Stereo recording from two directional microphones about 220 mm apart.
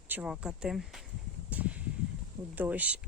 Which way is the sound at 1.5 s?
5° right (ahead or behind).